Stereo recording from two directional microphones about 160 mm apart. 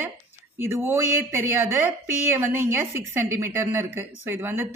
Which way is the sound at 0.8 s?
15° right (ahead or behind).